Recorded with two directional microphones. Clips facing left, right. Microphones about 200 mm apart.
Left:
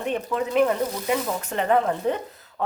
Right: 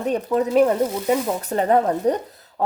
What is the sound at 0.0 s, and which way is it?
Speech, 40° right (ahead or behind).